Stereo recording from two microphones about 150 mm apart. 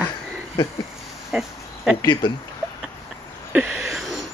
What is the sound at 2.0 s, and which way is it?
Speech, 25° left (ahead or behind).